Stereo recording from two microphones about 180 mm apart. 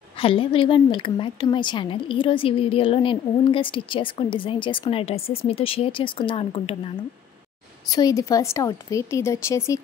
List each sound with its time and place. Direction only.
0.2 s a woman's voice: 30° left (ahead or behind)
7.9 s speech: 20° left (ahead or behind)